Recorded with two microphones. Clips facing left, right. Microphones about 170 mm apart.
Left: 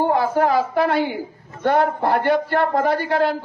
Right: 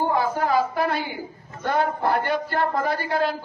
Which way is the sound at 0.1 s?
65° left (ahead or behind).